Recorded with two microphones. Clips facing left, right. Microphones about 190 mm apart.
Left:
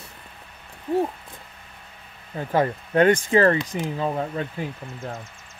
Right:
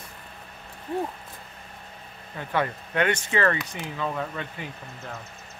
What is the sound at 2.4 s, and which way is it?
Speech, 35° left (ahead or behind).